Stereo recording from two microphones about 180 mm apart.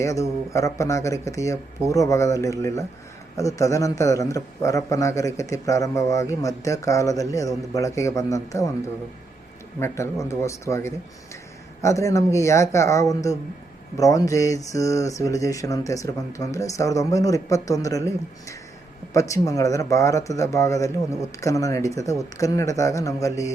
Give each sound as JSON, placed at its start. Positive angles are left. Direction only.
{"t": 0.0, "sound": "a man's voice", "side_deg": 15}